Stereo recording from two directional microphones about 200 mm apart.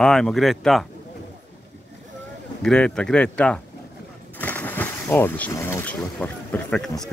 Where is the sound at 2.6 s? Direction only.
5° left (ahead or behind).